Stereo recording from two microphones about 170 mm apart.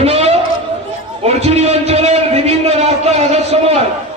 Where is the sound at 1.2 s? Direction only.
40° right (ahead or behind).